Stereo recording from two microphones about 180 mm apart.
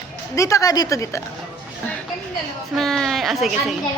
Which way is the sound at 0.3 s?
15° left (ahead or behind).